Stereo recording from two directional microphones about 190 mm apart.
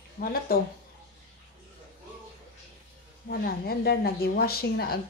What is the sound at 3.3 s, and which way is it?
Speech, 55° left (ahead or behind).